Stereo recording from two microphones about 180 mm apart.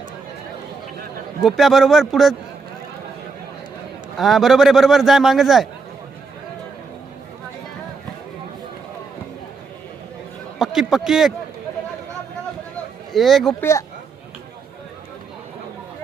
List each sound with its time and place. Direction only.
1.5 s a man's voice: centre (ahead or behind)
4.2 s a man's voice: centre (ahead or behind)
10.6 s speech: centre (ahead or behind)
13.1 s a man's voice: centre (ahead or behind)
13.6 s speech: 15° left (ahead or behind)